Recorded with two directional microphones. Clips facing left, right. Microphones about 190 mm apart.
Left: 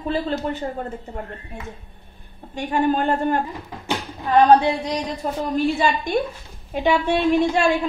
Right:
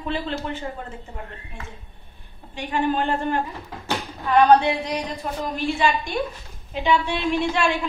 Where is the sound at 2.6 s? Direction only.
45° left (ahead or behind).